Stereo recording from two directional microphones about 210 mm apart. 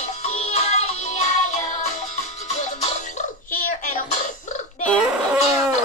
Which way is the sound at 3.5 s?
40° left (ahead or behind).